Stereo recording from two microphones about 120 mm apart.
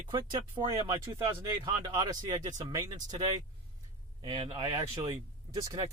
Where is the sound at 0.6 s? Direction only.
30° right (ahead or behind).